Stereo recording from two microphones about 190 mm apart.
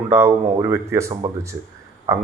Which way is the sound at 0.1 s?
15° right (ahead or behind).